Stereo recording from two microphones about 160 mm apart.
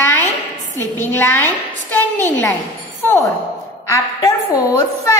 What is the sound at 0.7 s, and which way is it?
A woman's voice, 15° left (ahead or behind).